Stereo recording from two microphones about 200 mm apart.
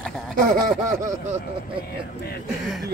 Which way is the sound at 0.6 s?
40° right (ahead or behind).